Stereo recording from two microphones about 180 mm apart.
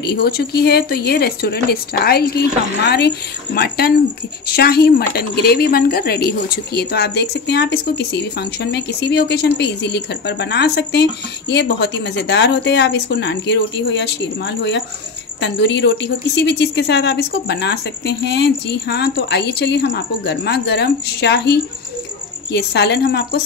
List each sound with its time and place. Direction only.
0.0 s a woman's voice: 65° left (ahead or behind)
3.5 s a woman's voice: 60° left (ahead or behind)